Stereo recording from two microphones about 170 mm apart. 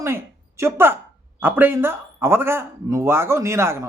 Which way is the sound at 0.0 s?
15° right (ahead or behind).